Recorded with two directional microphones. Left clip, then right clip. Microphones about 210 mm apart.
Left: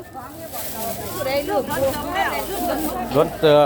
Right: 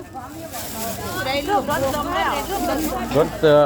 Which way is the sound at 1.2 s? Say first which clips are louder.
Left 1 dB; 40° right (ahead or behind).